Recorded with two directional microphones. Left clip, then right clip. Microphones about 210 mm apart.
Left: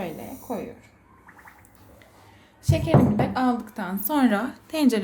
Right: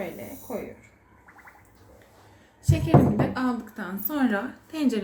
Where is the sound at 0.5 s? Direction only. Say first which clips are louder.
Left 2 dB; 45° left (ahead or behind).